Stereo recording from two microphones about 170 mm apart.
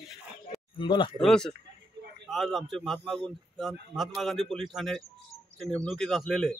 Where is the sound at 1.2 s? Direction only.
5° left (ahead or behind).